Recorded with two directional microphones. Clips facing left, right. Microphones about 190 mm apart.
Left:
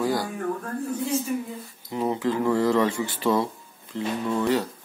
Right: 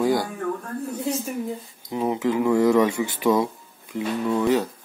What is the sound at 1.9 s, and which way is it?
Speech, 15° right (ahead or behind).